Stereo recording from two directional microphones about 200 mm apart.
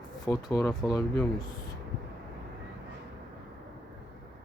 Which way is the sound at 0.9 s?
15° left (ahead or behind).